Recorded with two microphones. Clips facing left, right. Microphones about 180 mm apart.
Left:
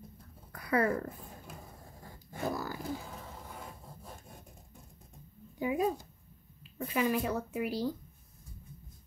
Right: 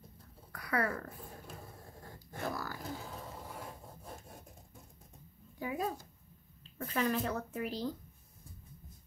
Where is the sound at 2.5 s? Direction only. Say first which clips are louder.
Left 4 dB; 20° left (ahead or behind).